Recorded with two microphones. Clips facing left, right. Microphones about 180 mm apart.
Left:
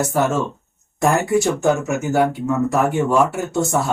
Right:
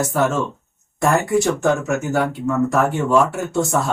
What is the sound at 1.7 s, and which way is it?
Speech, 5° left (ahead or behind).